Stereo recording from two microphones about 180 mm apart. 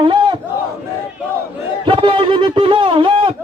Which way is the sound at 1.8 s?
30° right (ahead or behind).